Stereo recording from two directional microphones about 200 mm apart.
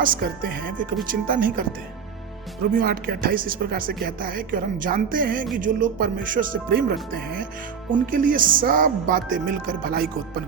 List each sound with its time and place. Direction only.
0.0 s speech: 50° right (ahead or behind)
2.7 s speech: 45° right (ahead or behind)